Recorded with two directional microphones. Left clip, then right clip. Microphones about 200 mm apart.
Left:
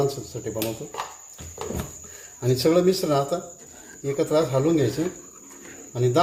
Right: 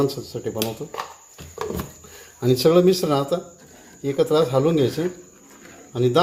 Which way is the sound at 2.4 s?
35° right (ahead or behind).